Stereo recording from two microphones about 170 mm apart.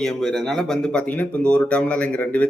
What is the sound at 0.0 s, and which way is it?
Speech, centre (ahead or behind).